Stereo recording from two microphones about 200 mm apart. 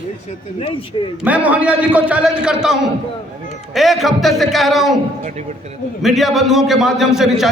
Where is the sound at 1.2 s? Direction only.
10° right (ahead or behind).